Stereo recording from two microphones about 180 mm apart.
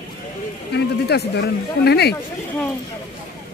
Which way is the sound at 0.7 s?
65° left (ahead or behind).